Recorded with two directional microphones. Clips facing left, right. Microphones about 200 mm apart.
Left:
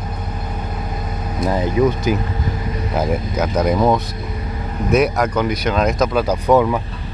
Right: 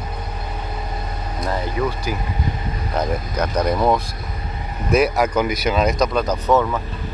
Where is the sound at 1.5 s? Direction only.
20° left (ahead or behind).